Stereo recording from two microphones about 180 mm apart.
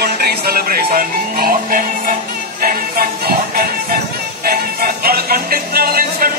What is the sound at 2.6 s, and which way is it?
Music, 55° right (ahead or behind).